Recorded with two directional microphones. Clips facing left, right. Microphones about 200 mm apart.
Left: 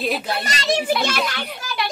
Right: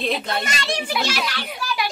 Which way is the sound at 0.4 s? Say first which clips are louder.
Left 4 dB; 40° left (ahead or behind).